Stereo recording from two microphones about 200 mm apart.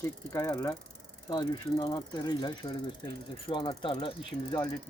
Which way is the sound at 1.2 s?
20° left (ahead or behind).